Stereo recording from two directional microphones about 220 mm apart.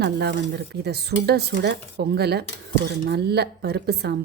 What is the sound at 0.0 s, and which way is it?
A woman's voice, 50° right (ahead or behind).